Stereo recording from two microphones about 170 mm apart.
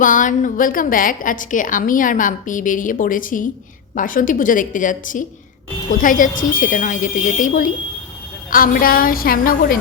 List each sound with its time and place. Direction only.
0.0 s a woman's voice: 50° left (ahead or behind)